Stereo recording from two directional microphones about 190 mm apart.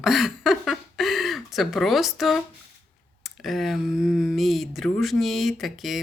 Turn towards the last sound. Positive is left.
turn(degrees=0)  # may be behind; listen again after turning